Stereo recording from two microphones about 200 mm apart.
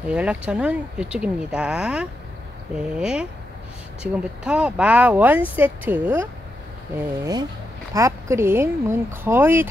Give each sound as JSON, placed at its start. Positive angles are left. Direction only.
{"t": 0.1, "sound": "speech", "side_deg": -5}